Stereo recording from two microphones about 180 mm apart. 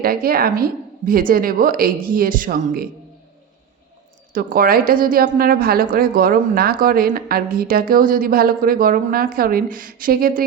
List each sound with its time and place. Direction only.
0.0 s a woman's voice: 55° right (ahead or behind)
4.3 s a woman's voice: 50° right (ahead or behind)